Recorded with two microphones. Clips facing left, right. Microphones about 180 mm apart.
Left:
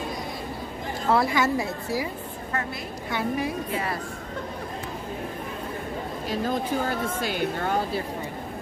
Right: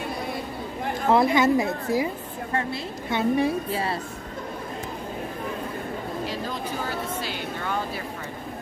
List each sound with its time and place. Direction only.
1.1 s a woman's voice: 20° right (ahead or behind)
3.1 s a woman's voice: 25° right (ahead or behind)
6.2 s speech: 45° left (ahead or behind)